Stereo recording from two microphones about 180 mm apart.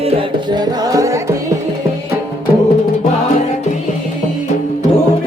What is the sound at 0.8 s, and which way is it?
Music, 20° right (ahead or behind).